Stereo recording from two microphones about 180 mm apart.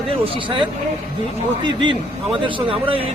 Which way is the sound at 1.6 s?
25° right (ahead or behind).